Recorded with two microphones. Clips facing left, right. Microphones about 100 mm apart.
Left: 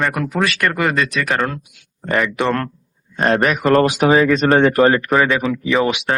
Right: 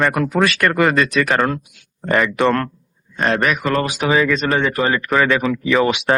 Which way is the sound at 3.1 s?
35° left (ahead or behind).